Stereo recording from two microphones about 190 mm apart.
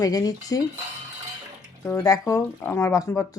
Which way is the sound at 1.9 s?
20° left (ahead or behind).